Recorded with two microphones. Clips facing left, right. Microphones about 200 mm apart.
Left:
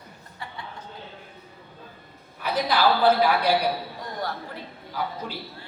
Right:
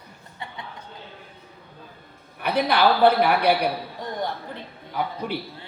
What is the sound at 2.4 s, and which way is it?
A man's voice, 60° right (ahead or behind).